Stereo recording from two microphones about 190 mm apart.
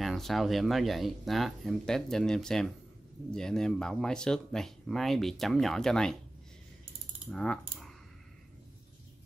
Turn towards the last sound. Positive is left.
turn(degrees=5)  # may be behind; listen again after turning